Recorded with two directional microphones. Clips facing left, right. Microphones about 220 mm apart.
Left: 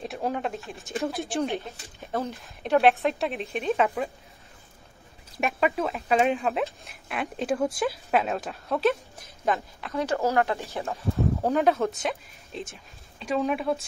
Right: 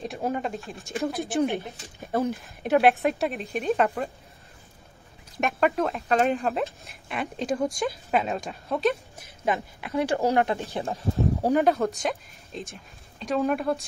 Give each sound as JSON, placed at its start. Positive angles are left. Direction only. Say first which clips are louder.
{"t": 0.0, "sound": "speech", "louder": "right 1 dB", "side_deg": 0}
{"t": 1.6, "sound": "speech", "louder": "right 2 dB", "side_deg": -15}
{"t": 5.4, "sound": "speech", "louder": "right 2 dB", "side_deg": 0}
{"t": 9.4, "sound": "speech", "louder": "even", "side_deg": -10}
{"t": 11.5, "sound": "speech", "louder": "right 1 dB", "side_deg": 0}